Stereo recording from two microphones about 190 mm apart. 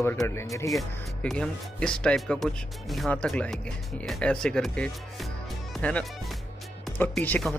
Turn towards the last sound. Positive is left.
turn(degrees=5)  # may be behind; listen again after turning